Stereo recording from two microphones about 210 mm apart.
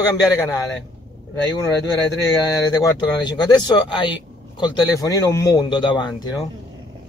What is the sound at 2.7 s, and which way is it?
Speech, 20° left (ahead or behind).